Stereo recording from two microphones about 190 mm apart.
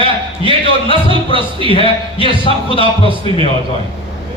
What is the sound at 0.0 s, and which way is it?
A man's voice, 30° left (ahead or behind).